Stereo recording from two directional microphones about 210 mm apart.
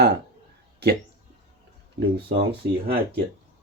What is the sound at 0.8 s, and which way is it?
Speech, 50° right (ahead or behind).